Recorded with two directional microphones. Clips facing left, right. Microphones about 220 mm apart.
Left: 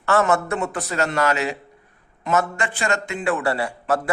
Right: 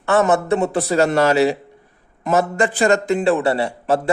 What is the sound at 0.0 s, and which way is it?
Speech, 20° right (ahead or behind).